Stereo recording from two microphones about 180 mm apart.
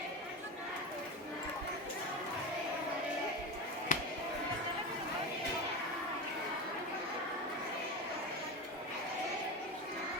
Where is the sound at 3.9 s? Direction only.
45° left (ahead or behind).